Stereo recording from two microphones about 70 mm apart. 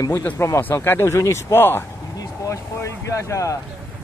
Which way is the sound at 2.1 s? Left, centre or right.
Left.